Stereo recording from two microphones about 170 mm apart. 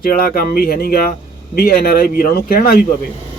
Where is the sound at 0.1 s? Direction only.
60° left (ahead or behind).